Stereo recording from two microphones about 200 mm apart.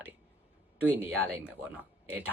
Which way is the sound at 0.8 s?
10° right (ahead or behind).